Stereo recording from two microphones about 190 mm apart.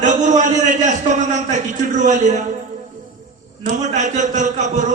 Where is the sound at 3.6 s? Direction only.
40° right (ahead or behind).